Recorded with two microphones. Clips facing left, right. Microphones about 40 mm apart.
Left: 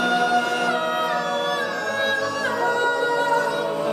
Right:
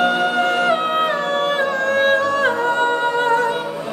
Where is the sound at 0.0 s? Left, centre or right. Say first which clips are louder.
Right 3 dB; right.